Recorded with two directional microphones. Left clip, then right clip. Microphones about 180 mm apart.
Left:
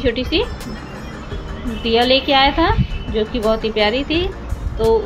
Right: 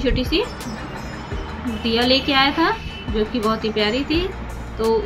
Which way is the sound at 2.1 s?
30° right (ahead or behind).